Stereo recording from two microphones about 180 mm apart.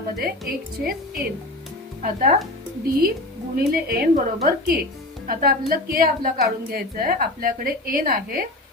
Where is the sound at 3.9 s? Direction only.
55° right (ahead or behind).